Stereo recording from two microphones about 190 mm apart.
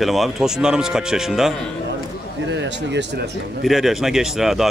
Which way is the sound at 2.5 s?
65° right (ahead or behind).